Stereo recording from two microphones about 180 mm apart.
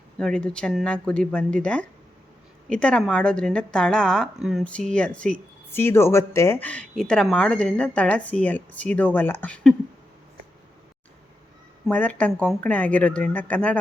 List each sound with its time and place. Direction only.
0.2 s speech: 5° left (ahead or behind)
11.9 s speech: 10° left (ahead or behind)